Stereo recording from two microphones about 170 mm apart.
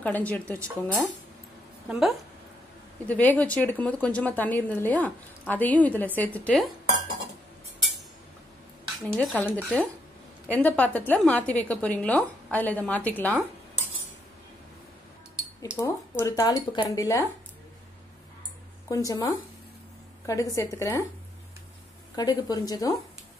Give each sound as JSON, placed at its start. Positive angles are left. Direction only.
{"t": 0.0, "sound": "a woman's voice", "side_deg": 10}
{"t": 0.6, "sound": "speech", "side_deg": -15}
{"t": 1.9, "sound": "a woman's voice", "side_deg": 0}
{"t": 3.1, "sound": "a woman's voice", "side_deg": 10}
{"t": 9.1, "sound": "a woman's voice", "side_deg": 10}
{"t": 10.5, "sound": "a woman's voice", "side_deg": 10}
{"t": 15.8, "sound": "speech", "side_deg": 15}
{"t": 18.9, "sound": "speech", "side_deg": 20}
{"t": 22.1, "sound": "speech", "side_deg": 20}